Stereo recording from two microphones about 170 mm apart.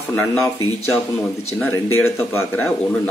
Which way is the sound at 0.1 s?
15° left (ahead or behind).